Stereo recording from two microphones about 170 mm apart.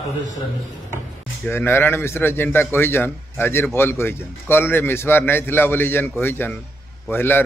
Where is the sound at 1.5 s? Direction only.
15° left (ahead or behind).